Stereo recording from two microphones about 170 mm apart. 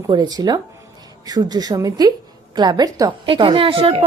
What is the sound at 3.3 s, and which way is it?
Speech, 30° right (ahead or behind).